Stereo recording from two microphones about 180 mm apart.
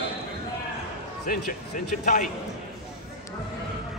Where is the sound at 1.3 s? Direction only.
50° left (ahead or behind).